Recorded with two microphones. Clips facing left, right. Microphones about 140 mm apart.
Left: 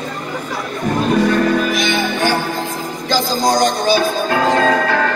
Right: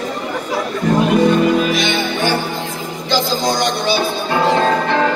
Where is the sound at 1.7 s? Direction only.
45° left (ahead or behind).